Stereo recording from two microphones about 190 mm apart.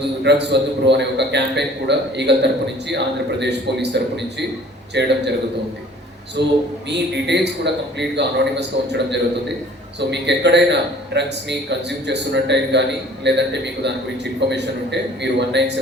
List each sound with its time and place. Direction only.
0.3 s a man's voice: 65° right (ahead or behind)
6.4 s a man's voice: 65° right (ahead or behind)